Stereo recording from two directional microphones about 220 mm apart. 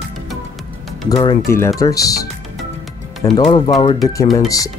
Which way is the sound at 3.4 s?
20° left (ahead or behind).